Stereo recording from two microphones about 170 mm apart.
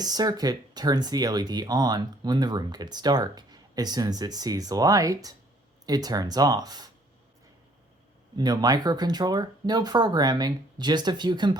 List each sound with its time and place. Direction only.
0.0 s speech: 25° right (ahead or behind)
8.4 s speech: 25° right (ahead or behind)